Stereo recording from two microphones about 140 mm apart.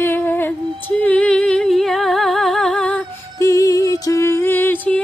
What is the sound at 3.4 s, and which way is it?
Music, 25° left (ahead or behind).